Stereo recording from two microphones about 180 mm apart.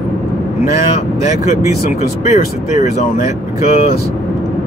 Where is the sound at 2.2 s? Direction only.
40° left (ahead or behind).